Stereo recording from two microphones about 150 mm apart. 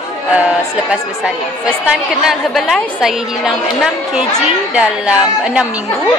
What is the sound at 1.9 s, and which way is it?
A woman's voice, centre (ahead or behind).